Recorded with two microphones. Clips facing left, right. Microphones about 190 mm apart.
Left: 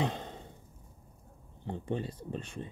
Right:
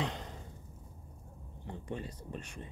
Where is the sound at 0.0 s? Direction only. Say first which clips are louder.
Left 4 dB; 25° left (ahead or behind).